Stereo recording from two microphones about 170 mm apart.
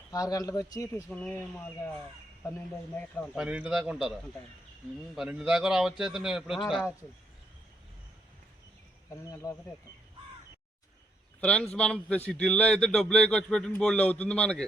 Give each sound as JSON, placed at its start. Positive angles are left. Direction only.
{"t": 0.1, "sound": "speech", "side_deg": 20}
{"t": 1.1, "sound": "speech", "side_deg": 10}
{"t": 3.3, "sound": "a man's voice", "side_deg": -5}
{"t": 9.2, "sound": "speech", "side_deg": 20}
{"t": 11.3, "sound": "a man's voice", "side_deg": 5}